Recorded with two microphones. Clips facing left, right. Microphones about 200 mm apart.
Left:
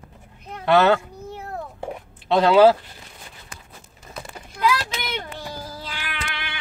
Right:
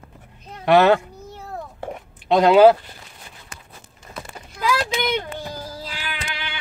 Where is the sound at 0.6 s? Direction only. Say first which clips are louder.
Right 2 dB; 15° right (ahead or behind).